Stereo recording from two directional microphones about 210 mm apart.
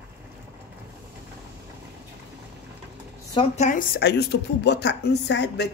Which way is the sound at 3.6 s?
40° left (ahead or behind).